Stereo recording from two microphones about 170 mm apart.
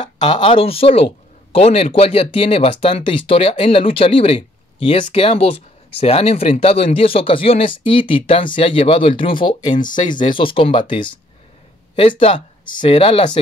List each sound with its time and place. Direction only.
0.0 s speech: 30° left (ahead or behind)
12.8 s speech: 35° left (ahead or behind)